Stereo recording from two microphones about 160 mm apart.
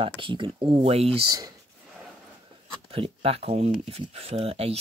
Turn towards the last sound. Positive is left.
turn(degrees=-40)  # may be behind; listen again after turning